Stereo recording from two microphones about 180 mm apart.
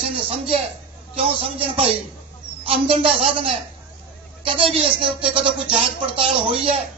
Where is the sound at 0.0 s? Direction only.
30° right (ahead or behind).